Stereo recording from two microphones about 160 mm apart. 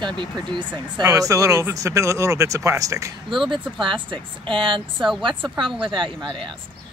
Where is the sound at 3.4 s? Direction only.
30° right (ahead or behind).